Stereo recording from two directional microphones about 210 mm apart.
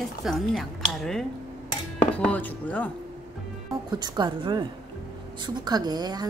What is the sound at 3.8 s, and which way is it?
A woman's voice, 20° right (ahead or behind).